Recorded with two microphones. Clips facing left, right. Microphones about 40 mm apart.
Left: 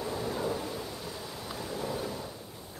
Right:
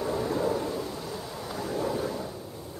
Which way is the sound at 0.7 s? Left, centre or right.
Centre.